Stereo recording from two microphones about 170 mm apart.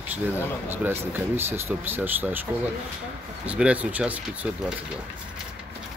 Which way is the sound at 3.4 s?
10° right (ahead or behind).